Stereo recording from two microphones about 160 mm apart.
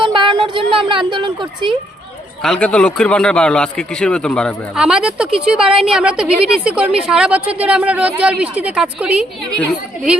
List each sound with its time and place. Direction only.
0.0 s a sound: 30° right (ahead or behind)
2.4 s a woman's voice: 5° left (ahead or behind)
4.8 s a woman's voice: 5° right (ahead or behind)